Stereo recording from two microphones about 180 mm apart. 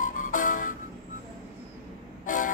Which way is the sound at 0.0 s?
45° left (ahead or behind).